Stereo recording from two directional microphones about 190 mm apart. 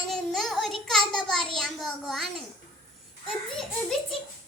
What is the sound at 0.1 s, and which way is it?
Child singing, centre (ahead or behind).